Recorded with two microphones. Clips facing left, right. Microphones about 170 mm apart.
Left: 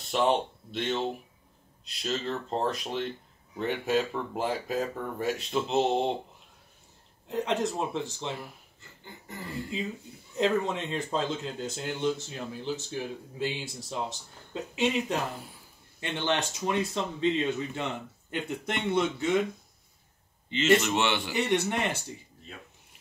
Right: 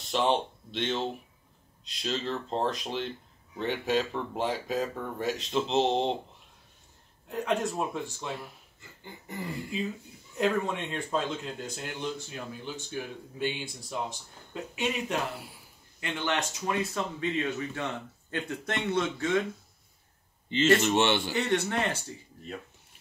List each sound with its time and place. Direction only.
0.0 s speech: 5° left (ahead or behind)
7.2 s speech: 25° left (ahead or behind)
10.3 s speech: 25° left (ahead or behind)
20.4 s a man's voice: 30° right (ahead or behind)
21.5 s speech: 15° left (ahead or behind)